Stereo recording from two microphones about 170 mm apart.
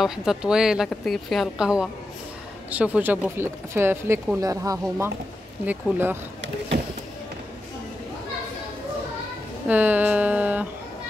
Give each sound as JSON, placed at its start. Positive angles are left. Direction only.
{"t": 0.0, "sound": "speech", "side_deg": -5}
{"t": 6.7, "sound": "a sound", "side_deg": -70}
{"t": 9.7, "sound": "speech", "side_deg": -10}